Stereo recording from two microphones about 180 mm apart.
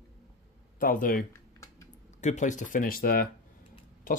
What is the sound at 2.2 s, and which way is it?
Speech, 40° left (ahead or behind).